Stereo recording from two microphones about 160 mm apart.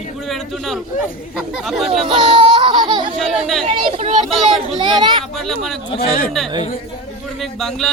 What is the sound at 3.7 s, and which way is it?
Speech, 35° right (ahead or behind).